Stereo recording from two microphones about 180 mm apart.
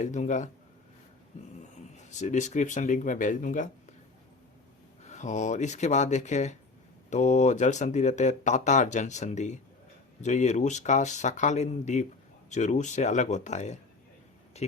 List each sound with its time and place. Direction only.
0.0 s speech: 40° left (ahead or behind)
2.0 s speech: 40° left (ahead or behind)
5.0 s speech: 40° left (ahead or behind)